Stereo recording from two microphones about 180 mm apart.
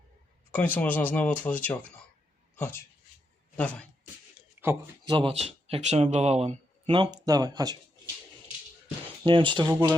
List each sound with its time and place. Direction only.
0.5 s speech: 10° left (ahead or behind)
4.4 s a sound: 15° right (ahead or behind)
5.0 s speech: 25° right (ahead or behind)
7.3 s speech: 20° right (ahead or behind)
9.2 s speech: 25° right (ahead or behind)